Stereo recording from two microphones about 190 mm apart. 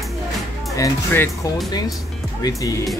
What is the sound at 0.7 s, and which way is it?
Speech, 15° left (ahead or behind).